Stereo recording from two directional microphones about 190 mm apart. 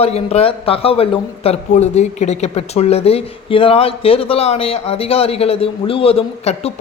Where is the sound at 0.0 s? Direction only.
35° left (ahead or behind).